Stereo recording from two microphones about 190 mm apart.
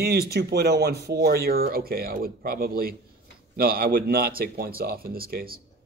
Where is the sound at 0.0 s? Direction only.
55° right (ahead or behind).